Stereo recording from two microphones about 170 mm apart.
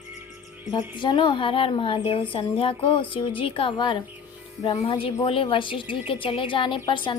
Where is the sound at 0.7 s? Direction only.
30° left (ahead or behind).